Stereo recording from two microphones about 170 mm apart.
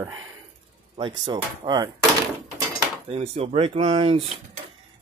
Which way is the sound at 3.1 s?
35° right (ahead or behind).